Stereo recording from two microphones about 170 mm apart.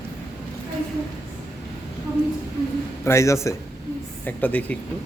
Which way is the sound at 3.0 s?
15° left (ahead or behind).